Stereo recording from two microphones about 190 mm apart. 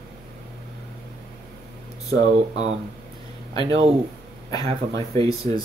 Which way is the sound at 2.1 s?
35° right (ahead or behind).